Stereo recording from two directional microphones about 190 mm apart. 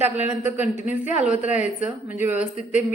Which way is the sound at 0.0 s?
10° right (ahead or behind).